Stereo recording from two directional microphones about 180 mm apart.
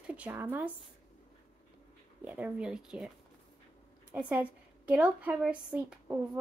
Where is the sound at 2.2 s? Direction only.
10° right (ahead or behind).